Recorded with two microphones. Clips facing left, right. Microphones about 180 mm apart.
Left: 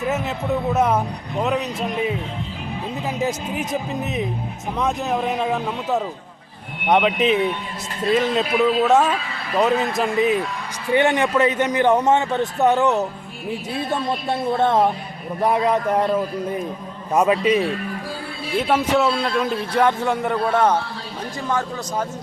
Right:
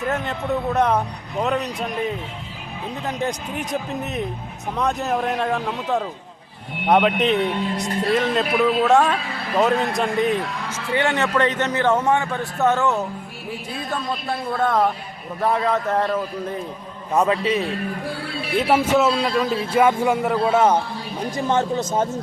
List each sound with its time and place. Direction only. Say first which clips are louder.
0.1 s a man's voice: left 1 dB; 5° left (ahead or behind)
3.2 s a man's voice: left 3 dB; 5° left (ahead or behind)
10.9 s a man's voice: left 3 dB; 15° left (ahead or behind)
17.3 s a man's voice: left 3 dB; 15° left (ahead or behind)
18.6 s a man's voice: right 1 dB; 10° right (ahead or behind)
21.3 s speech: right 4 dB; 25° right (ahead or behind)